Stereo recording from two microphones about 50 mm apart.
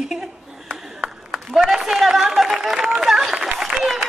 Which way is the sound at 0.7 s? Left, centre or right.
Right.